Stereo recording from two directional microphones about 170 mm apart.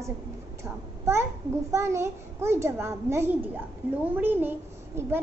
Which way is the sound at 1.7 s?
15° right (ahead or behind).